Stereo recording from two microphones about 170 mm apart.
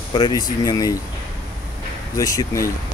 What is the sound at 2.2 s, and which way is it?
Speech, 20° left (ahead or behind).